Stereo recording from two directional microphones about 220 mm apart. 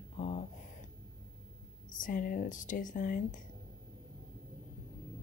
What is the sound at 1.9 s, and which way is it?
Speech, 35° left (ahead or behind).